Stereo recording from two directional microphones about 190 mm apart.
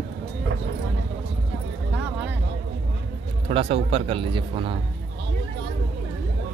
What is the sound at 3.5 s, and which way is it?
Speech, 30° right (ahead or behind).